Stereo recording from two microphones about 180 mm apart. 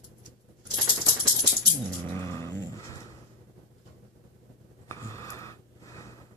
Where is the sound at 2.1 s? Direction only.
15° left (ahead or behind).